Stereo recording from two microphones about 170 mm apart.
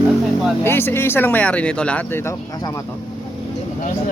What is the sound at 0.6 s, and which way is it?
Speech, 15° left (ahead or behind).